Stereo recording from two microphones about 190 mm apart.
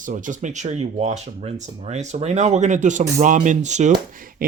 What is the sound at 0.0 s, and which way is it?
Speech, 40° right (ahead or behind).